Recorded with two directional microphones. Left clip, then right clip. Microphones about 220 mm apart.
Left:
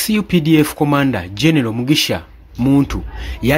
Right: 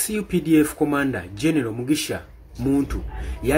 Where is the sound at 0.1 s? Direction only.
45° left (ahead or behind).